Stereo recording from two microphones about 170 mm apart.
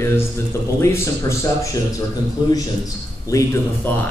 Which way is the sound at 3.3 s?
15° left (ahead or behind).